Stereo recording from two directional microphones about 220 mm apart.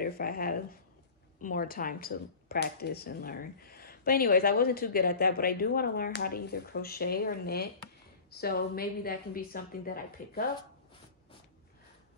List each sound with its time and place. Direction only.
0.0 s speech: 40° left (ahead or behind)